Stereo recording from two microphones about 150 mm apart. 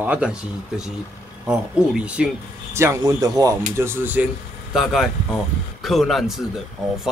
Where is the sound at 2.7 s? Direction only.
20° right (ahead or behind).